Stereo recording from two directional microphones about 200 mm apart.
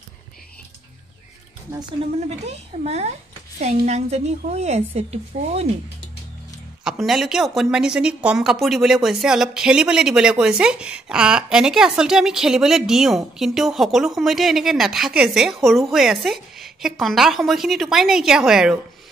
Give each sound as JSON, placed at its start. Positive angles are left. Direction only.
{"t": 2.1, "sound": "a child's voice", "side_deg": -30}
{"t": 6.8, "sound": "a woman's voice", "side_deg": 0}